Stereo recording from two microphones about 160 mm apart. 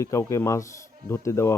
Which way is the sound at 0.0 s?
20° left (ahead or behind).